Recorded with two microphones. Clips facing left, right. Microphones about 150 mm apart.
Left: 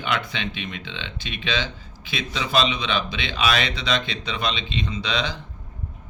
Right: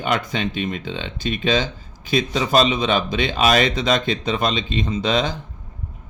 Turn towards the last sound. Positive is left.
turn(degrees=-45)  # may be behind; listen again after turning